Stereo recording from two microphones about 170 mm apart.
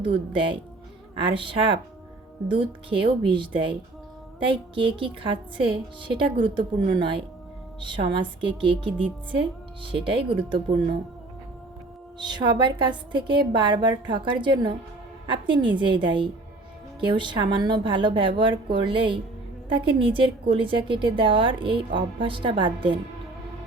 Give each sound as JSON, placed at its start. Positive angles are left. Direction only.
{"t": 0.0, "sound": "a woman's voice", "side_deg": -30}
{"t": 12.2, "sound": "a woman's voice", "side_deg": -25}